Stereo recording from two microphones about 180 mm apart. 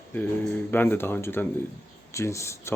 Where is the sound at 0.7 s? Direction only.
10° left (ahead or behind).